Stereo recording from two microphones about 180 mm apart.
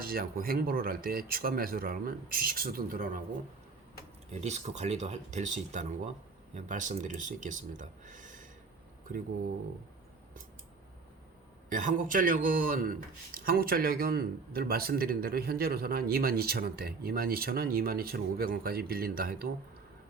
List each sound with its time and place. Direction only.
0.0 s a man's voice: 55° right (ahead or behind)
4.3 s speech: 40° right (ahead or behind)
11.7 s a man's voice: 45° right (ahead or behind)